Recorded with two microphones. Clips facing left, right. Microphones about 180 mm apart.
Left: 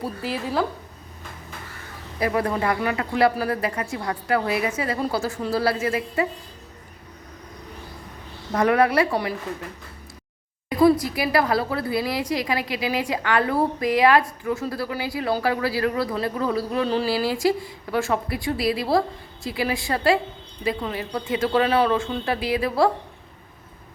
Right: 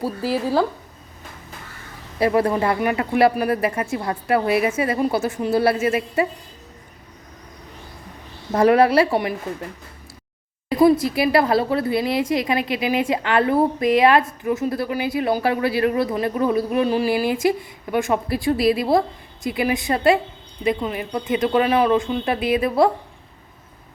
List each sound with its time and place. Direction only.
0.0 s speech: 35° right (ahead or behind)
2.1 s a woman's voice: 30° right (ahead or behind)
8.5 s a woman's voice: 30° right (ahead or behind)
10.7 s a woman's voice: 25° right (ahead or behind)